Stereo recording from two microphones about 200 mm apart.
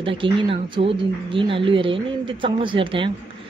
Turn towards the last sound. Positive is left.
turn(degrees=-25)  # may be behind; listen again after turning